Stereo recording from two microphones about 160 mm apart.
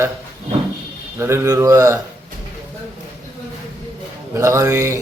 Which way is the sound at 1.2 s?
15° right (ahead or behind).